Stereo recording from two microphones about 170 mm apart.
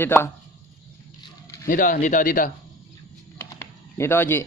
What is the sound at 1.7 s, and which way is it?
Speech, 55° left (ahead or behind).